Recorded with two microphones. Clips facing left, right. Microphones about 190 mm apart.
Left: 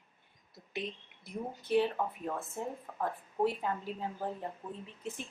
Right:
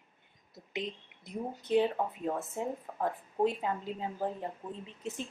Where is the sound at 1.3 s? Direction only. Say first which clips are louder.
Right 2 dB; 20° right (ahead or behind).